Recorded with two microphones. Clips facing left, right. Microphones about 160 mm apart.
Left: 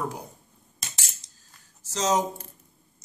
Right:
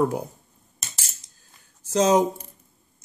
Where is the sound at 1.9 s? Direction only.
60° right (ahead or behind).